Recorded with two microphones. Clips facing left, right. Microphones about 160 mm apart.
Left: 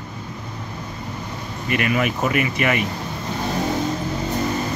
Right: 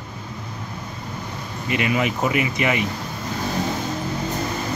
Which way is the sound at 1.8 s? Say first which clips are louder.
Even; 15° right (ahead or behind).